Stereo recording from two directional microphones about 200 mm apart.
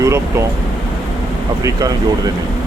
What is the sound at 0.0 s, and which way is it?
Speech, 15° right (ahead or behind).